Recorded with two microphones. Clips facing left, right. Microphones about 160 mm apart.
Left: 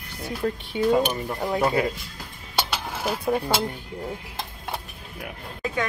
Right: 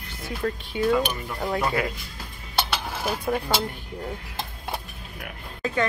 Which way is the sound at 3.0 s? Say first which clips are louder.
Left 2 dB; centre (ahead or behind).